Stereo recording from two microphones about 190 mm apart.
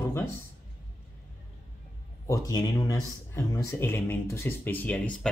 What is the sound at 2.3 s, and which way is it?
Speech, 20° left (ahead or behind).